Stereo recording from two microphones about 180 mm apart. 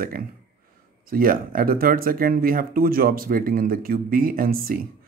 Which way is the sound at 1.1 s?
50° right (ahead or behind).